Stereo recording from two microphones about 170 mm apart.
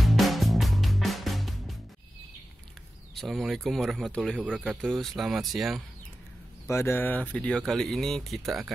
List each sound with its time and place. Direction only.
0.0 s music: centre (ahead or behind)
3.2 s speech: centre (ahead or behind)
6.7 s speech: 15° left (ahead or behind); by 8.7 s centre (ahead or behind)